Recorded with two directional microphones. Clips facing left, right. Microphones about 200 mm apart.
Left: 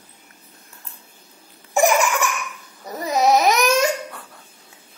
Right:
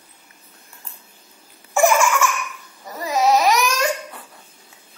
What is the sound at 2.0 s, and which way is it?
Laughter, 15° left (ahead or behind).